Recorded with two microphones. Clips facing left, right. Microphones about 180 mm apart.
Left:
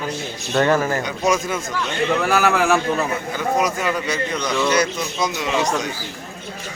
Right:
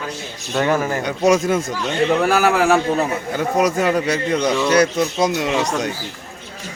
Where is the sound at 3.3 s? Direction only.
60° right (ahead or behind).